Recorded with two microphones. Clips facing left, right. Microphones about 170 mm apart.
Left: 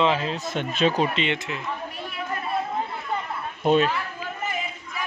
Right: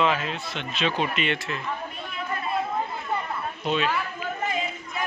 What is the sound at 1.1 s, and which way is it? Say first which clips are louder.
Speech: left 1 dB; 20° left (ahead or behind).